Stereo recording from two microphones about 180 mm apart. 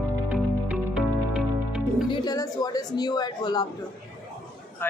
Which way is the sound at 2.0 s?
25° left (ahead or behind).